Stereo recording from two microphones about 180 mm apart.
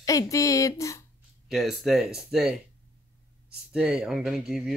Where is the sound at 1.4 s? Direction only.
Centre (ahead or behind).